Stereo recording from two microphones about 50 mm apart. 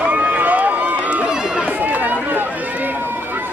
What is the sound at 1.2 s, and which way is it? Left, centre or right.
Run, centre.